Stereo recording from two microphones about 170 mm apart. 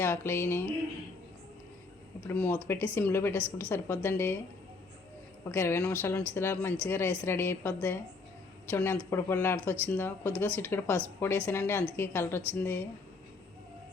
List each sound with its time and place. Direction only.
0.0 s speech: 15° left (ahead or behind)
2.2 s speech: 10° left (ahead or behind)
5.5 s speech: 15° left (ahead or behind)